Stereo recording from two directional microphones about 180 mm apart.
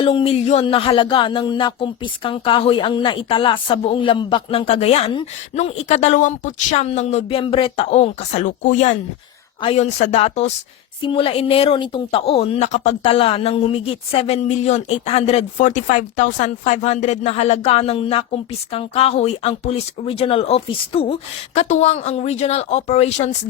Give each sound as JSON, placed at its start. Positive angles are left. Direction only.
{"t": 0.0, "sound": "music", "side_deg": 30}